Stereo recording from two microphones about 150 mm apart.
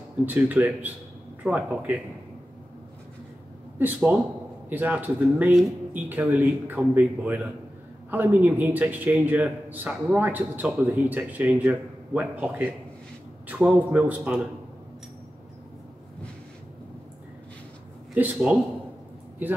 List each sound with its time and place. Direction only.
0.2 s speech: 15° right (ahead or behind)
3.7 s speech: 10° right (ahead or behind)
18.1 s speech: 10° right (ahead or behind)